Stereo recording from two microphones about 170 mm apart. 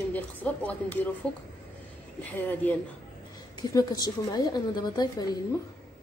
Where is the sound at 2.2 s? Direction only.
10° left (ahead or behind).